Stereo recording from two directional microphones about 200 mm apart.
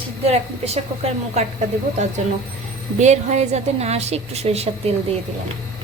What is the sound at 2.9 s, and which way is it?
A woman's voice, 35° right (ahead or behind).